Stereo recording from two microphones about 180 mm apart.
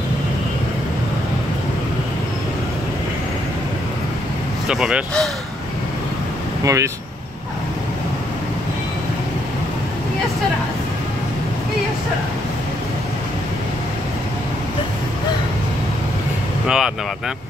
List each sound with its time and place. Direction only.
4.6 s speech: 5° right (ahead or behind)
6.6 s speech: 15° right (ahead or behind)
16.6 s speech: 5° right (ahead or behind)